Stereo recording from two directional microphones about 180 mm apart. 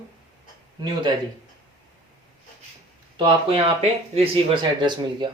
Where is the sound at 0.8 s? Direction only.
25° right (ahead or behind).